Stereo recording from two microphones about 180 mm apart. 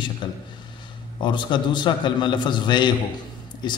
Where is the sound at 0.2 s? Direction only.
25° left (ahead or behind).